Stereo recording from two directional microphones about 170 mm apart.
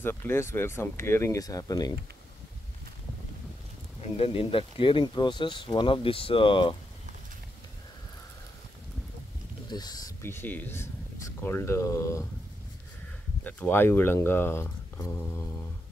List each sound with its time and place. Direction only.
0.0 s speech: 10° left (ahead or behind)
4.0 s speech: 35° left (ahead or behind)
9.7 s speech: 25° left (ahead or behind)
13.4 s speech: 10° left (ahead or behind)